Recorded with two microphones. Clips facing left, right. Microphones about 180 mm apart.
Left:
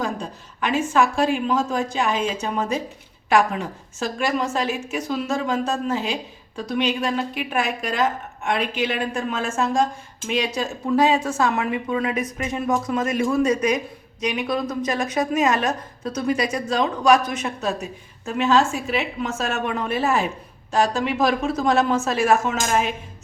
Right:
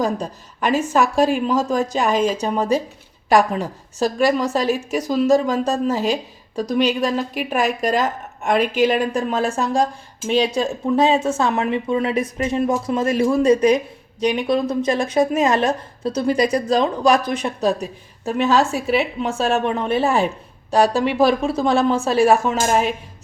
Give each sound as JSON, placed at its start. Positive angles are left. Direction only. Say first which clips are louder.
{"t": 0.0, "sound": "speech", "louder": "right 5 dB", "side_deg": -40}